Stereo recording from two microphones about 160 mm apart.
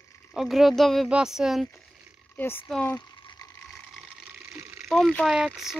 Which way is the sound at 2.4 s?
15° left (ahead or behind).